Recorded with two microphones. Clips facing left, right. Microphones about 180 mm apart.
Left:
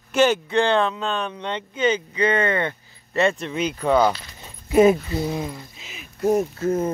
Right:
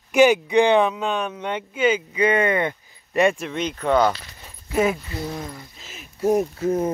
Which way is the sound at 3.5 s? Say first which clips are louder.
Left 1 dB; 10° left (ahead or behind).